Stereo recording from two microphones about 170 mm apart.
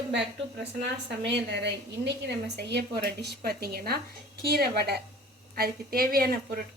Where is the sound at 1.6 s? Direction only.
80° right; by 6.5 s 60° right (ahead or behind).